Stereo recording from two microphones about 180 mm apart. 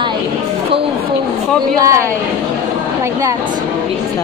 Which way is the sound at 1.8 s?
20° right (ahead or behind).